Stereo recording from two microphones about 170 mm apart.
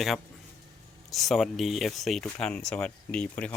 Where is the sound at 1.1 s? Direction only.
Centre (ahead or behind).